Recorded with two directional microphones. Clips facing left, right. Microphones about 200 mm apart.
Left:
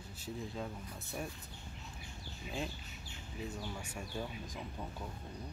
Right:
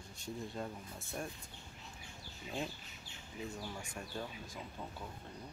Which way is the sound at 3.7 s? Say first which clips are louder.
Left 2 dB; 10° left (ahead or behind).